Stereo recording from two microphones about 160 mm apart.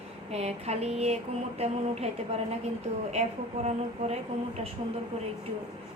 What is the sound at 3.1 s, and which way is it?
A woman's voice, 45° right (ahead or behind).